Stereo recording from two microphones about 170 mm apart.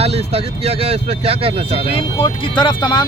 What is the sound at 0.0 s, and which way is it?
Speech, 35° right (ahead or behind).